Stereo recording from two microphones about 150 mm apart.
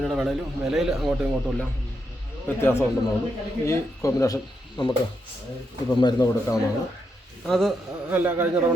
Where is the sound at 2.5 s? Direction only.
15° left (ahead or behind).